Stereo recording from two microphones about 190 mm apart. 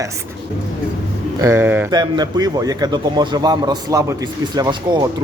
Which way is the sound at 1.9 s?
25° right (ahead or behind).